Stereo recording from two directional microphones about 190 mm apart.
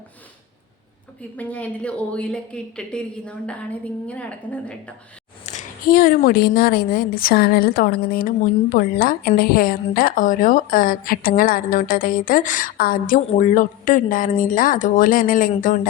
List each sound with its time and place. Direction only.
1.4 s speech: 10° left (ahead or behind)
5.5 s a woman's voice: 45° left (ahead or behind)